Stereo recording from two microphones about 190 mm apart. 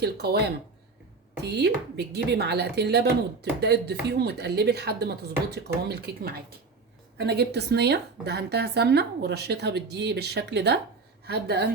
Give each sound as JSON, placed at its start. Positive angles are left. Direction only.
{"t": 0.0, "sound": "a woman's voice", "side_deg": -55}